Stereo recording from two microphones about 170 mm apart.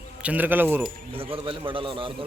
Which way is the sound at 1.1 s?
35° right (ahead or behind).